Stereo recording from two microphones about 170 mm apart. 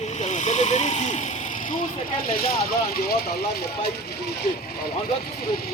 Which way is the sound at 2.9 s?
60° left (ahead or behind).